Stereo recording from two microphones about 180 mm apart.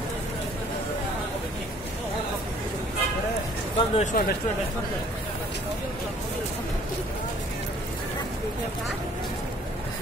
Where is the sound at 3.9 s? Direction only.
45° left (ahead or behind).